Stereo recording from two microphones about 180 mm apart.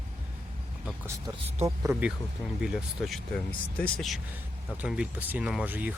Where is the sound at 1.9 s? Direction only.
5° right (ahead or behind).